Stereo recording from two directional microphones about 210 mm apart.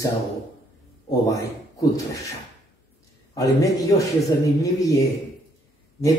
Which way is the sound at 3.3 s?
15° left (ahead or behind).